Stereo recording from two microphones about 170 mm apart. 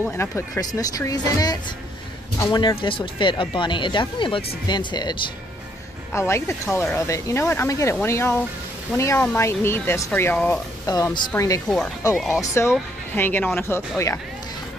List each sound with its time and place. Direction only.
0.0 s speech: 15° left (ahead or behind)
6.1 s speech: 15° left (ahead or behind)